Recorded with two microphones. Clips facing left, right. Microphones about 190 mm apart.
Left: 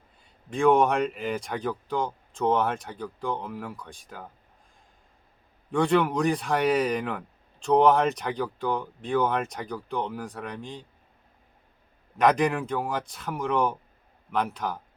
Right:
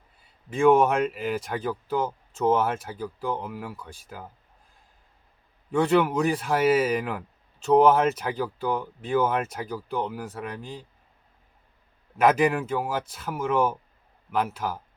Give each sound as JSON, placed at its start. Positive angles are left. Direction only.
{"t": 0.5, "sound": "speech", "side_deg": -5}
{"t": 5.7, "sound": "speech", "side_deg": -5}
{"t": 12.1, "sound": "speech", "side_deg": -5}